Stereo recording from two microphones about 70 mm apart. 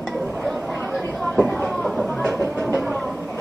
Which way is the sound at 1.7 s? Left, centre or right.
Centre.